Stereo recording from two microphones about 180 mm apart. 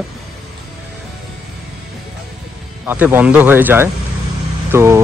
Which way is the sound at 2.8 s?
10° right (ahead or behind).